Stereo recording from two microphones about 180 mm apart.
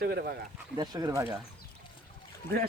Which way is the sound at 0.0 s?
60° right (ahead or behind).